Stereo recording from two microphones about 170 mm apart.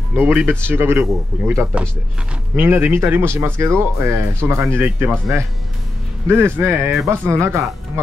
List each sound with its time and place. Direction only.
0.1 s speech: 10° right (ahead or behind)
6.2 s speech: 15° right (ahead or behind)